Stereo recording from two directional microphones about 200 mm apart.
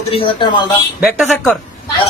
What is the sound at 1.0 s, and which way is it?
Speech, centre (ahead or behind).